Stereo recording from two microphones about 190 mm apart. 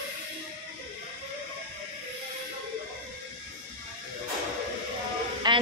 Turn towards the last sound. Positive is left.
turn(degrees=-25)  # may be behind; listen again after turning